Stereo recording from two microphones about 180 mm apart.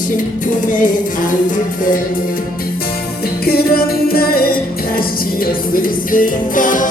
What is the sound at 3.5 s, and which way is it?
Music, 55° left (ahead or behind).